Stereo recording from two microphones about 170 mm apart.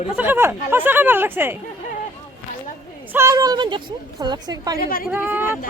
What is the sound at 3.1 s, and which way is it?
A woman's voice, 15° right (ahead or behind).